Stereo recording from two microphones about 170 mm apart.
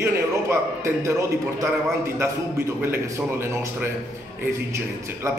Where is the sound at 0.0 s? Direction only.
15° right (ahead or behind).